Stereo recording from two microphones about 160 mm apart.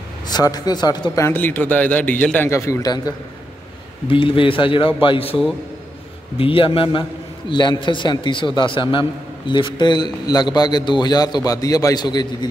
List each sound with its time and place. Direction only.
0.3 s a man's voice: 25° left (ahead or behind)
4.1 s a man's voice: 35° left (ahead or behind)